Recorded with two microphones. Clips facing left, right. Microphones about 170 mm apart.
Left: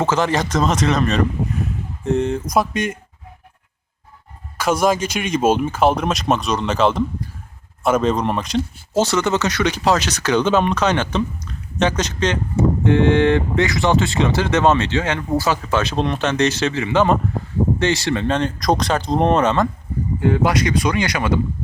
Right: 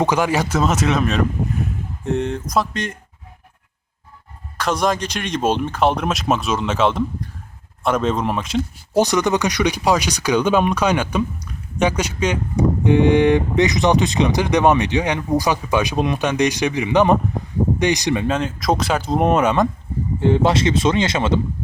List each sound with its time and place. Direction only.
0.0 s speech: 10° right (ahead or behind); by 3.0 s 10° left (ahead or behind)
4.5 s speech: 5° left (ahead or behind)
8.9 s speech: 15° right (ahead or behind)
20.1 s speech: 25° right (ahead or behind)